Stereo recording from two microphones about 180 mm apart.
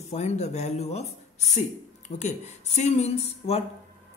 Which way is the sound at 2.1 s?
40° left (ahead or behind).